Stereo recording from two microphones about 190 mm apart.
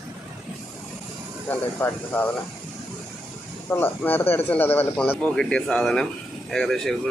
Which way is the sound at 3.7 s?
10° left (ahead or behind).